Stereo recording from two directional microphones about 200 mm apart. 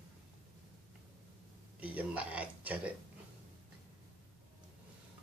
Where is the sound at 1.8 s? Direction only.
5° right (ahead or behind).